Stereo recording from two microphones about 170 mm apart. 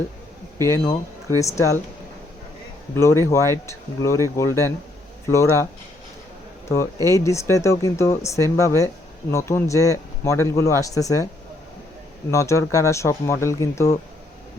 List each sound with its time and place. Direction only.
0.6 s speech: 15° left (ahead or behind)
2.9 s speech: 15° left (ahead or behind)
6.7 s speech: 15° left (ahead or behind)
12.3 s speech: 15° left (ahead or behind)